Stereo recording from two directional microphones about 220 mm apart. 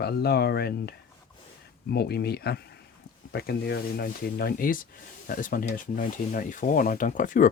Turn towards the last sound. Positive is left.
turn(degrees=35)  # may be behind; listen again after turning